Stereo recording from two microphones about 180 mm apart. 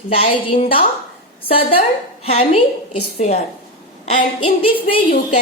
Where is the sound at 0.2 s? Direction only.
35° left (ahead or behind).